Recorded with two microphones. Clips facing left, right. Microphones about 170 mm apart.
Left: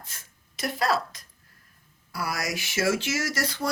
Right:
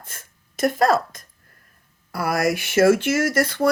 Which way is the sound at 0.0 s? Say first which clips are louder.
Right 4 dB; 50° right (ahead or behind).